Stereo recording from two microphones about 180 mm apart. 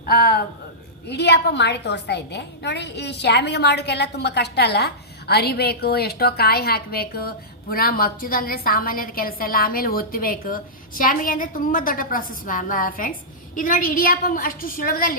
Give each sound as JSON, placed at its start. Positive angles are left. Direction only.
{"t": 0.0, "sound": "a woman's voice", "side_deg": 55}
{"t": 1.0, "sound": "a woman's voice", "side_deg": 70}